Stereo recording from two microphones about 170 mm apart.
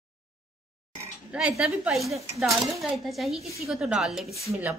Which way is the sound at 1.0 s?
5° right (ahead or behind).